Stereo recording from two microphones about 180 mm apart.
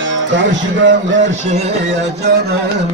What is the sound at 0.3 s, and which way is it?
Speech, 90° right.